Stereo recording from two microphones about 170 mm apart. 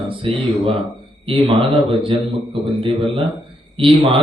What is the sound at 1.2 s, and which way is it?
A man's voice, 30° right (ahead or behind).